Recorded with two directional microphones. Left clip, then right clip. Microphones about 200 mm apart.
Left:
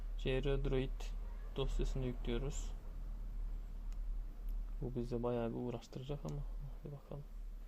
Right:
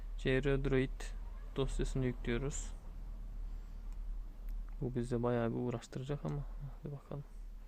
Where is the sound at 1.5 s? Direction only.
25° right (ahead or behind).